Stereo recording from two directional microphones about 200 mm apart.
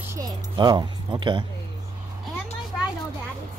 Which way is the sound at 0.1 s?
20° right (ahead or behind).